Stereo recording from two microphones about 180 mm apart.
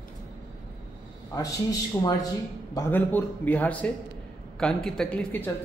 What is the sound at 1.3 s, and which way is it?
Speech, 20° left (ahead or behind).